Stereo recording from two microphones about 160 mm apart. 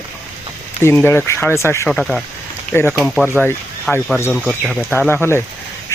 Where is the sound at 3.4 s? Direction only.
5° left (ahead or behind).